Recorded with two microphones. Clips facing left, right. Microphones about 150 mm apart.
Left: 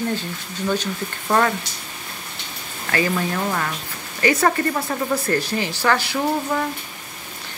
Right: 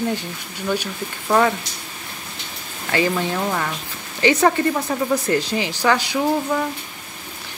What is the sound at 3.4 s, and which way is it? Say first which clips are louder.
Speech: right 1 dB; 5° right (ahead or behind).